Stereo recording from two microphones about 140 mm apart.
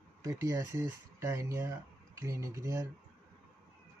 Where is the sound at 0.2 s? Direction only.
20° right (ahead or behind).